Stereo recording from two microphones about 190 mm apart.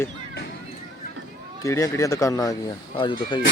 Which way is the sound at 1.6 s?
15° left (ahead or behind).